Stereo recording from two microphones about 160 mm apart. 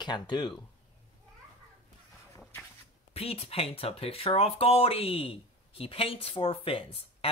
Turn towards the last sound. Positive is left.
turn(degrees=35)  # may be behind; listen again after turning